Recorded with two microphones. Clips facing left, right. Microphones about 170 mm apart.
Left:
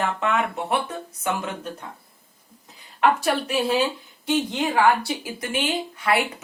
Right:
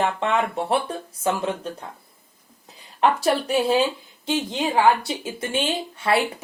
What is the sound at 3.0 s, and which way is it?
Speech, 35° right (ahead or behind).